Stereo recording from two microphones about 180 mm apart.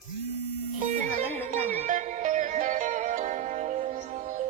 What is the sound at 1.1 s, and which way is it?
Music, 10° left (ahead or behind).